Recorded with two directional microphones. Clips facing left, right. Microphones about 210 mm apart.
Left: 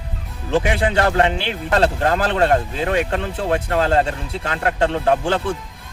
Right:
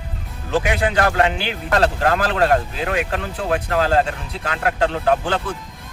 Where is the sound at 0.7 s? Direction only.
25° left (ahead or behind).